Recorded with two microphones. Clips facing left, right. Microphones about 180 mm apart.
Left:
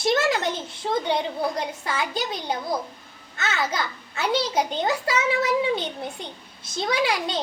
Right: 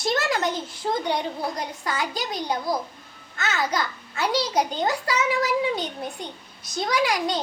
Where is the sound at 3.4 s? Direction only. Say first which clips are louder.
Right 1 dB; 25° left (ahead or behind).